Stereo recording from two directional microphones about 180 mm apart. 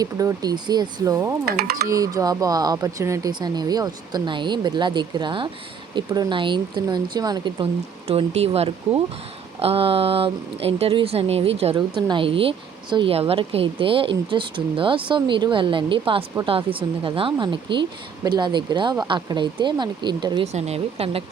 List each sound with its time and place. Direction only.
0.0 s speech: 20° right (ahead or behind)
1.5 s speech: 60° right (ahead or behind)
1.9 s speech: 20° right (ahead or behind)
20.5 s speech: 35° right (ahead or behind)